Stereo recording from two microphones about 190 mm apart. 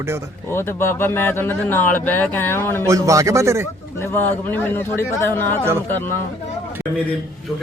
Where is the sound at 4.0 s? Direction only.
10° left (ahead or behind).